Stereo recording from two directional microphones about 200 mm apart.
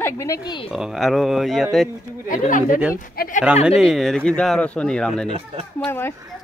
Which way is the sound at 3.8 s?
Centre (ahead or behind).